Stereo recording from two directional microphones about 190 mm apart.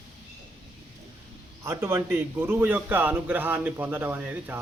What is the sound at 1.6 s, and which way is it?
A man's voice, 15° right (ahead or behind).